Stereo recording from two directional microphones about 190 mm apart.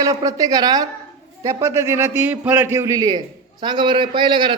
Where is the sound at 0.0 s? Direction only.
20° right (ahead or behind).